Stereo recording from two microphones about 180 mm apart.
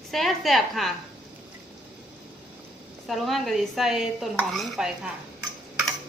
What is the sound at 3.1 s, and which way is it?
A woman's voice, centre (ahead or behind).